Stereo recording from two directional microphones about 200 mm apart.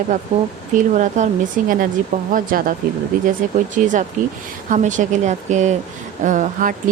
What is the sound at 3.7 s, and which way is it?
A woman's voice, 40° right (ahead or behind).